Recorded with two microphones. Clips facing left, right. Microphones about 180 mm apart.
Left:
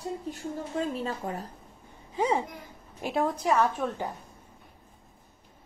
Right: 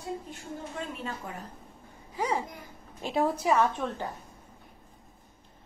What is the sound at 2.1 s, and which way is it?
Speech, 25° left (ahead or behind).